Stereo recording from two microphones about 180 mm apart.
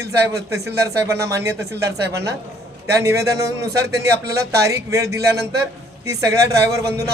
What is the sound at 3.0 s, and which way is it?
A man's voice, 15° right (ahead or behind).